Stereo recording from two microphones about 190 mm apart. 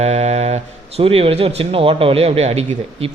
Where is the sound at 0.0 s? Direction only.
35° right (ahead or behind).